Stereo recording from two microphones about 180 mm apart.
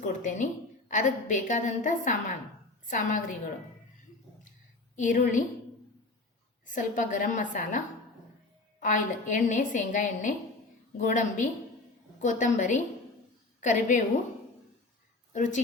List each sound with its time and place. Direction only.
0.2 s a woman's voice: 45° left (ahead or behind)
4.9 s a woman's voice: 45° left (ahead or behind)
6.7 s a woman's voice: 45° left (ahead or behind)
8.8 s a woman's voice: 45° left (ahead or behind)
15.3 s a woman's voice: 45° left (ahead or behind)